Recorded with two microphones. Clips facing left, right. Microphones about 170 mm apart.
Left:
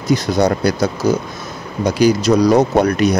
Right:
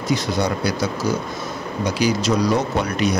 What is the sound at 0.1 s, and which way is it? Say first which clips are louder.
Speech: left 7 dB; 45° left (ahead or behind).